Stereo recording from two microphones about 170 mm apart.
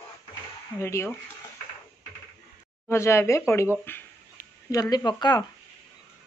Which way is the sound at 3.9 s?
10° left (ahead or behind).